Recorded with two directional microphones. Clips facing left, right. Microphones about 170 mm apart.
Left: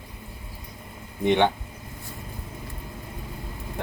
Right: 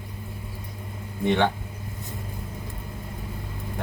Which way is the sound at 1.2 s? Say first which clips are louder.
Left 2 dB; 20° left (ahead or behind).